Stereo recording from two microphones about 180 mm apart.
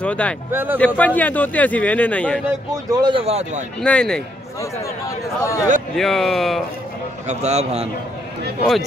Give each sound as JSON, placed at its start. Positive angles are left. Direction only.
{"t": 0.0, "sound": "a man's voice", "side_deg": 5}
{"t": 0.5, "sound": "speech", "side_deg": -10}
{"t": 0.7, "sound": "a man's voice", "side_deg": 10}
{"t": 2.9, "sound": "speech", "side_deg": -25}
{"t": 3.8, "sound": "speech", "side_deg": 5}
{"t": 5.0, "sound": "a man's voice", "side_deg": 20}
{"t": 5.9, "sound": "speech", "side_deg": 0}
{"t": 7.2, "sound": "speech", "side_deg": -35}